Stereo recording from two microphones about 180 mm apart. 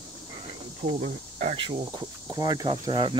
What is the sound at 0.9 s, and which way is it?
Speech, 45° right (ahead or behind).